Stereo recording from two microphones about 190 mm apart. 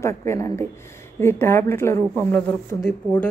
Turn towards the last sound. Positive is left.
turn(degrees=5)  # may be behind; listen again after turning